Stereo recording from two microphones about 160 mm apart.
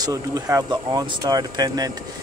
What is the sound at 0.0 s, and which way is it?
Speech, 20° right (ahead or behind).